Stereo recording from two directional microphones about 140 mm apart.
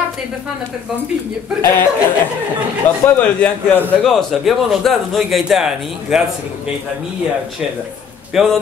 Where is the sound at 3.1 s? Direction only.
10° left (ahead or behind).